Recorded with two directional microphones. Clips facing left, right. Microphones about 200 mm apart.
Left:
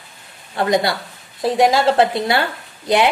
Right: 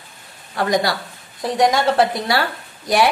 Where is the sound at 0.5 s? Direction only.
25° left (ahead or behind).